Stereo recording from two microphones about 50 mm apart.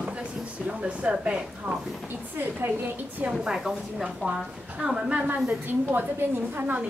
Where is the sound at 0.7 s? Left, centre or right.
Right.